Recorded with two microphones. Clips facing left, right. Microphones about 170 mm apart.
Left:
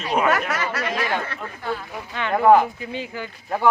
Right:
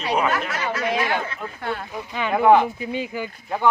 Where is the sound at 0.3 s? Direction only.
70° left (ahead or behind).